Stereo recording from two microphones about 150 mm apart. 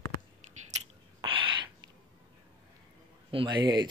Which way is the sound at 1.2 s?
35° right (ahead or behind).